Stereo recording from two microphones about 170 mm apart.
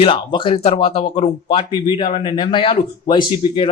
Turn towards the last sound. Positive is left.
turn(degrees=30)  # may be behind; listen again after turning